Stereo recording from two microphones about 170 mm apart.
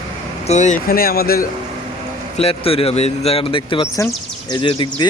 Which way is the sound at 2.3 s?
35° left (ahead or behind).